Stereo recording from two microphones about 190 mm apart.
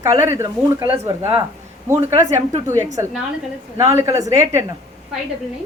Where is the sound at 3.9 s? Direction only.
15° right (ahead or behind).